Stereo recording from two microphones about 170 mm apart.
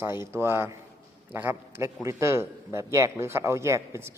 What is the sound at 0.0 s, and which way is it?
A man's voice, 15° right (ahead or behind).